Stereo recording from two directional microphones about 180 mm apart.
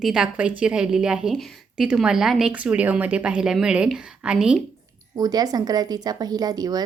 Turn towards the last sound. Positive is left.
turn(degrees=-20)  # may be behind; listen again after turning